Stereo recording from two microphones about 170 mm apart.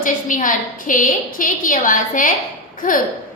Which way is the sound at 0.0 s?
50° left (ahead or behind).